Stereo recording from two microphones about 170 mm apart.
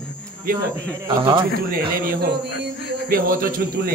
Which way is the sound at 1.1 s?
30° right (ahead or behind).